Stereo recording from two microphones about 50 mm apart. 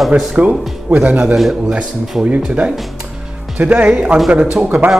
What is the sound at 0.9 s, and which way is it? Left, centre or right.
Speech, right.